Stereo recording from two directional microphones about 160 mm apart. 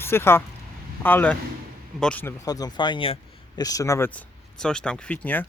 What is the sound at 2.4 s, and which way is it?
Speech, 25° left (ahead or behind).